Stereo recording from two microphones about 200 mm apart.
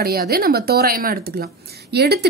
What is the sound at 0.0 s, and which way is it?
A woman's voice, 50° right (ahead or behind).